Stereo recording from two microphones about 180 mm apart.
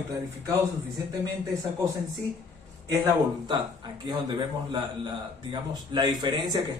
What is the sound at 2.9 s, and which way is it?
Speech, 25° right (ahead or behind).